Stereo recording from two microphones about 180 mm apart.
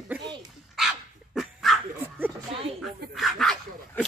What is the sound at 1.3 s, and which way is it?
Dog, centre (ahead or behind).